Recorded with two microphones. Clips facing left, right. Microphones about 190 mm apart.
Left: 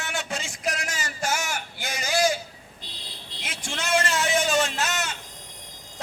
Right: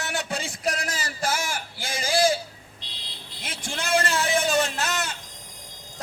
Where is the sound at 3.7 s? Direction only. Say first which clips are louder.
Right 1 dB; 35° right (ahead or behind).